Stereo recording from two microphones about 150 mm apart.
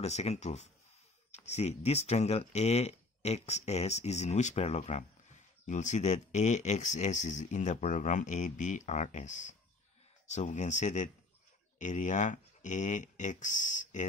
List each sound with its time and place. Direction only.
0.0 s speech: 45° left (ahead or behind)